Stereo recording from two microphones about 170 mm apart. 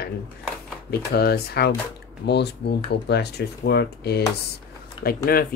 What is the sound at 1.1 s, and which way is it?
Speech, 70° left (ahead or behind).